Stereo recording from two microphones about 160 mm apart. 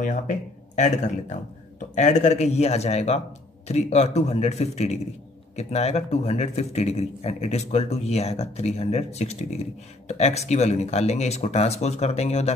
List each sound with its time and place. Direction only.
0.0 s speech: 50° left (ahead or behind)